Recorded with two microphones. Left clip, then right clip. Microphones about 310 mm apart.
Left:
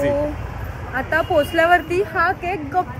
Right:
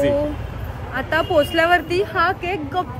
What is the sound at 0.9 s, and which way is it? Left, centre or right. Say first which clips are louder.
Speech: even; centre.